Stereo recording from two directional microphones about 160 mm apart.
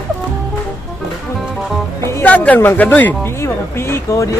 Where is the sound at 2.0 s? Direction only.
15° left (ahead or behind).